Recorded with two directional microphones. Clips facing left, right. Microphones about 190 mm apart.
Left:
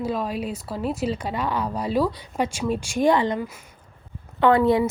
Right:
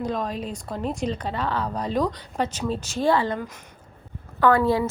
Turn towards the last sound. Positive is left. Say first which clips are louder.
# left 2 dB
turn(degrees=20)  # may be behind; listen again after turning